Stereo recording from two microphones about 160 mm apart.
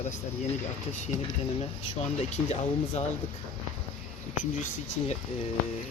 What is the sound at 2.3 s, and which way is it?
Speech, 45° left (ahead or behind).